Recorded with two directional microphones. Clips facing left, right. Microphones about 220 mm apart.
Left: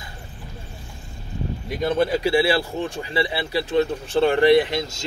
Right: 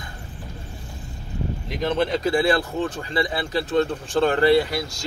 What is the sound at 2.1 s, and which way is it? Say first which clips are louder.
Speech: left 1 dB; 10° left (ahead or behind).